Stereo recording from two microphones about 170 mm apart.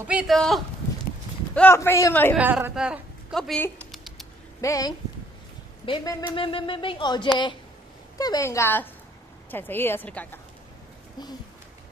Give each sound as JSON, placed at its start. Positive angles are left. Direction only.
{"t": 0.0, "sound": "speech", "side_deg": -5}
{"t": 1.5, "sound": "a woman's voice", "side_deg": 10}
{"t": 2.3, "sound": "a woman's voice", "side_deg": -10}
{"t": 3.9, "sound": "a sound", "side_deg": 0}
{"t": 4.6, "sound": "a woman's voice", "side_deg": 20}
{"t": 5.9, "sound": "a woman's voice", "side_deg": 30}